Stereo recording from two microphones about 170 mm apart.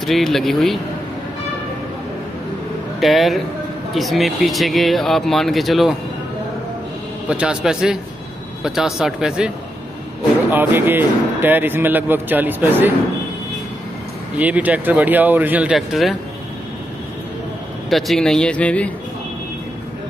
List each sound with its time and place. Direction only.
0.0 s speech: centre (ahead or behind)
3.0 s speech: centre (ahead or behind)
7.2 s speech: 5° right (ahead or behind)
10.5 s speech: 10° right (ahead or behind)
14.3 s speech: 10° right (ahead or behind)
17.8 s speech: centre (ahead or behind)